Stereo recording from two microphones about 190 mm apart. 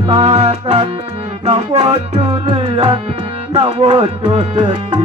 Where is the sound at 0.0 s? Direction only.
25° right (ahead or behind).